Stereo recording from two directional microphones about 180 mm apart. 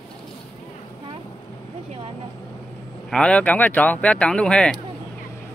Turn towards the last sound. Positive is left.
turn(degrees=5)  # may be behind; listen again after turning